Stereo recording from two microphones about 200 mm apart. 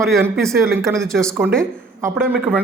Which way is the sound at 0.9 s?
Centre (ahead or behind).